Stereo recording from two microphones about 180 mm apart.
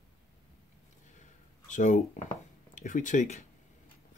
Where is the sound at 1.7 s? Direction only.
45° left (ahead or behind).